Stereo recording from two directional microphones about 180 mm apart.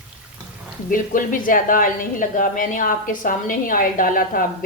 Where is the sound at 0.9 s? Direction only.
50° left (ahead or behind).